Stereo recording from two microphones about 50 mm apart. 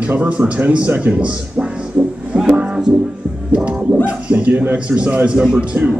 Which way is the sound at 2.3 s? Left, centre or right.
Centre.